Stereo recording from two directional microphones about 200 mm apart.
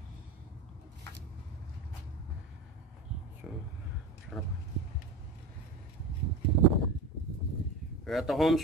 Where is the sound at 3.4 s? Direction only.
5° right (ahead or behind).